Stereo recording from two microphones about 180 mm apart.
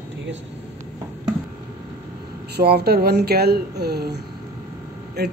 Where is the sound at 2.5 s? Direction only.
60° right (ahead or behind).